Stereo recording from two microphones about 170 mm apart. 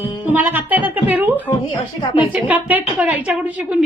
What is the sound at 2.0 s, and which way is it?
Speech, 30° left (ahead or behind).